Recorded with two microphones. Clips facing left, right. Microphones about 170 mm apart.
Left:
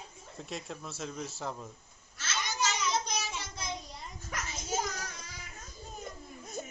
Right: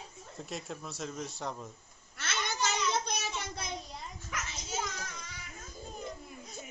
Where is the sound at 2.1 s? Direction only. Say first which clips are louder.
Even; 60° right (ahead or behind).